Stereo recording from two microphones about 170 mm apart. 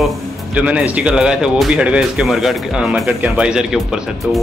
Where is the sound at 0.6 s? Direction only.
5° right (ahead or behind).